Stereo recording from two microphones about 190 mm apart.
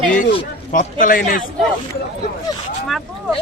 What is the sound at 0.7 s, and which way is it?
Speech, 45° left (ahead or behind).